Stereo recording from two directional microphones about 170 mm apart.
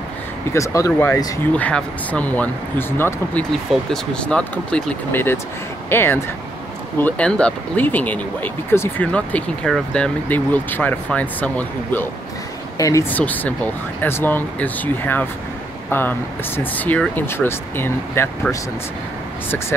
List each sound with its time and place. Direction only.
0.5 s speech: 20° left (ahead or behind)
1.5 s speech: 5° left (ahead or behind)